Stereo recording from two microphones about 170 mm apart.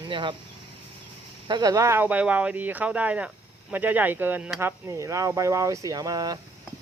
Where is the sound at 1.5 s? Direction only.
25° right (ahead or behind).